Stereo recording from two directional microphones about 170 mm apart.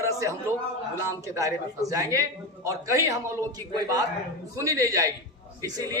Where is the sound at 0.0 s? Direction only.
20° right (ahead or behind).